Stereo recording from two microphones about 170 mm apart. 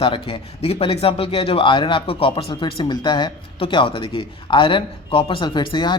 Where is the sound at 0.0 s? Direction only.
35° left (ahead or behind).